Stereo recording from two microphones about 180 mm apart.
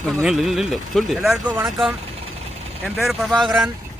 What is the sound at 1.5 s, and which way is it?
Speech, 15° right (ahead or behind).